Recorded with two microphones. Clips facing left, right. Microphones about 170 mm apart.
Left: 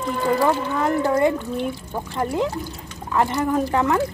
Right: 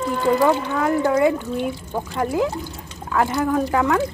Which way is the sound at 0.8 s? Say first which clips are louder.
Right 1 dB; 5° right (ahead or behind).